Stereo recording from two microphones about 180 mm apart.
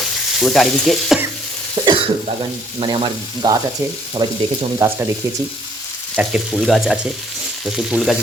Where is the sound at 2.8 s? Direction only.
25° right (ahead or behind).